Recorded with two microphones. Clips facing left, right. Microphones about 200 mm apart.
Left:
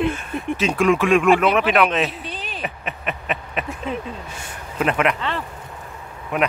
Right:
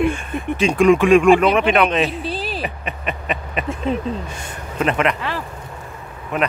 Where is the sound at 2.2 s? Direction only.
35° right (ahead or behind).